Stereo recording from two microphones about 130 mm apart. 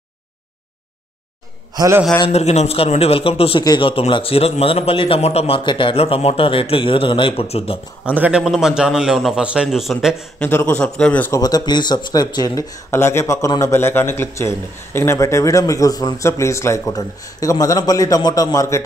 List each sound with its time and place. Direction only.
1.8 s a man's voice: 20° right (ahead or behind)
2.2 s a man's voice: 55° left (ahead or behind)
8.0 s a man's voice: 10° right (ahead or behind)
10.4 s a man's voice: 15° left (ahead or behind)
11.3 s a man's voice: 30° left (ahead or behind)